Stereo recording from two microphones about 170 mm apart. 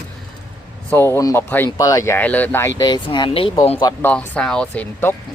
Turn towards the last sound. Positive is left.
turn(degrees=10)  # may be behind; listen again after turning